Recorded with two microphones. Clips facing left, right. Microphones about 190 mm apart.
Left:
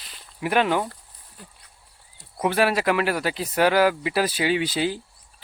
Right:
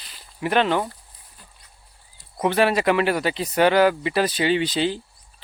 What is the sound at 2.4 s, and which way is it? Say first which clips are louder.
Speech: right 2 dB; 5° left (ahead or behind).